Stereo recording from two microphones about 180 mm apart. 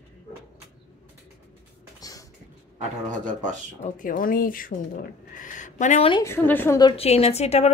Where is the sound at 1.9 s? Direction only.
20° left (ahead or behind).